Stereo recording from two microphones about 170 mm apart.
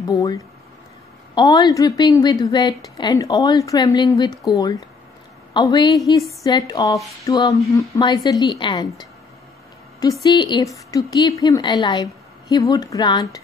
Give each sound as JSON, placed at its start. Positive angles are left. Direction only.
{"t": 0.0, "sound": "a woman's voice", "side_deg": 20}